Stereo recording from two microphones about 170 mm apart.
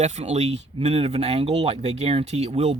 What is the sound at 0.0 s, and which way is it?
Speech, 40° right (ahead or behind).